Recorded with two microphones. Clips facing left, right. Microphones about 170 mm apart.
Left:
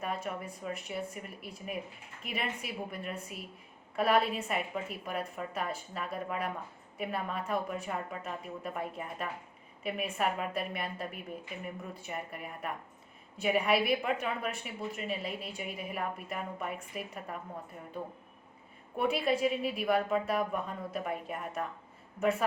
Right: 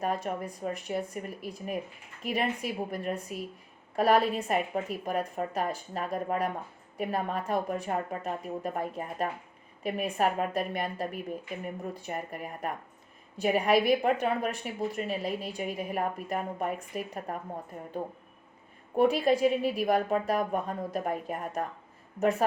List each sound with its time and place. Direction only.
0.0 s a woman's voice: 40° right (ahead or behind)